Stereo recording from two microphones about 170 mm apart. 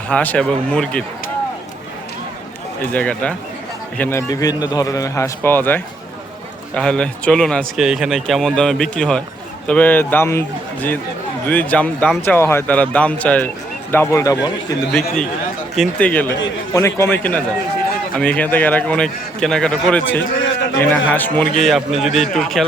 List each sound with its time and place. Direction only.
0.1 s a man's voice: 10° left (ahead or behind)
2.9 s a man's voice: 10° left (ahead or behind)
4.3 s a man's voice: 20° left (ahead or behind)
14.9 s a man's voice: 5° left (ahead or behind)